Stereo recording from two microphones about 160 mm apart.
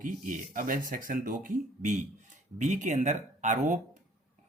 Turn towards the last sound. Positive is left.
turn(degrees=-50)  # may be behind; listen again after turning